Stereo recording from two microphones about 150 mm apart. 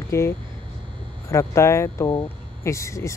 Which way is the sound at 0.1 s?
20° left (ahead or behind).